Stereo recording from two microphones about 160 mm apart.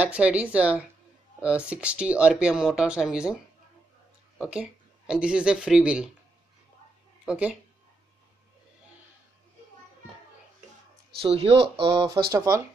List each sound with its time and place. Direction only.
0.0 s speech: 10° right (ahead or behind)
4.4 s speech: 5° right (ahead or behind)
7.2 s speech: 10° right (ahead or behind)
11.1 s speech: 35° right (ahead or behind); by 12.6 s 20° right (ahead or behind)